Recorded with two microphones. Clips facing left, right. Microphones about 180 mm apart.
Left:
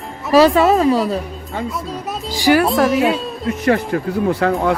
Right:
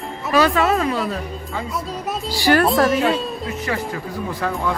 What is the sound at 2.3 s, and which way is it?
Speech, 15° left (ahead or behind).